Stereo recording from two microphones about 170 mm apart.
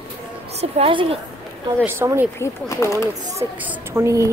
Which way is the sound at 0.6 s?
35° right (ahead or behind).